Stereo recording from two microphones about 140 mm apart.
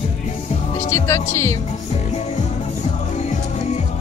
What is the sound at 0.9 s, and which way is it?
Music, 20° left (ahead or behind).